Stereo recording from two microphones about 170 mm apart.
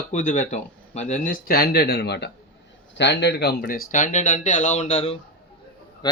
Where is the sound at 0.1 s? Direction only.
45° left (ahead or behind); by 2.3 s 80° left.